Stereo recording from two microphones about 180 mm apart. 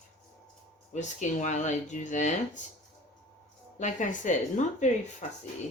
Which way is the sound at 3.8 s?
45° left (ahead or behind).